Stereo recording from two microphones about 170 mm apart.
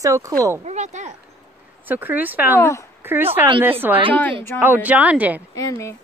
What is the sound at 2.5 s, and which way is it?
Speech, 15° left (ahead or behind).